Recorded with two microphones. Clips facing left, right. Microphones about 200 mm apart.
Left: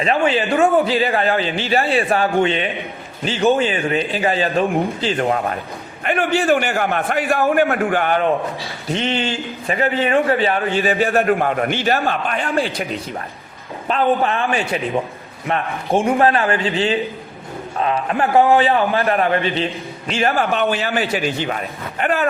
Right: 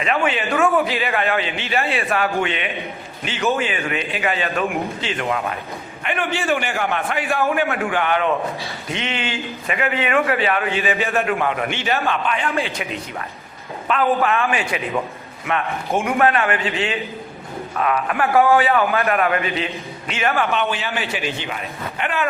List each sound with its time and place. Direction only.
0.0 s a man's voice: 35° left (ahead or behind)